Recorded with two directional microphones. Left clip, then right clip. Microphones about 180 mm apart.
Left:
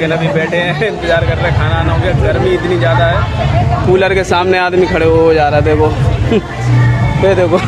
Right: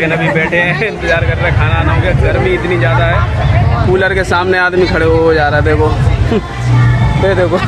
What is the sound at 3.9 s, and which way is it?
Speech, 15° left (ahead or behind).